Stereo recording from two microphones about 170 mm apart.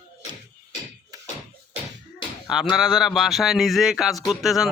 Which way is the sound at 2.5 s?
Centre (ahead or behind).